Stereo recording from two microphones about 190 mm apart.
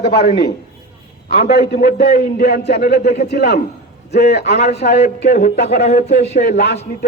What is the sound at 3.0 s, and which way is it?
Speech, 35° left (ahead or behind).